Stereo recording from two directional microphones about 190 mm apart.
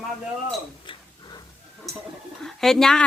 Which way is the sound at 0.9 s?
25° left (ahead or behind).